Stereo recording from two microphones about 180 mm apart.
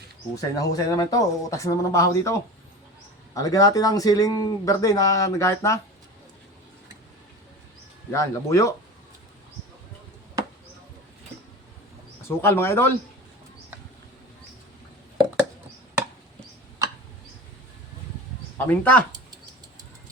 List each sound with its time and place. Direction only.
0.3 s speech: 20° left (ahead or behind)
8.1 s speech: 15° left (ahead or behind)
12.4 s speech: 15° left (ahead or behind)
16.8 s tick: 20° right (ahead or behind)
18.5 s speech: 10° left (ahead or behind)